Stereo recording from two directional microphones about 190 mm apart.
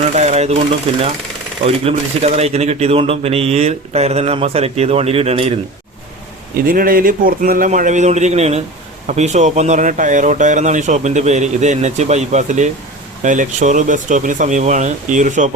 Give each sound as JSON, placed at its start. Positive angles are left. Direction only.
{"t": 0.1, "sound": "sewing machine", "side_deg": -35}
{"t": 1.6, "sound": "speech", "side_deg": -30}
{"t": 6.7, "sound": "a man's voice", "side_deg": -50}